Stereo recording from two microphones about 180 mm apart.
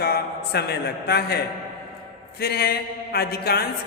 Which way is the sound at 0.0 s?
60° left (ahead or behind).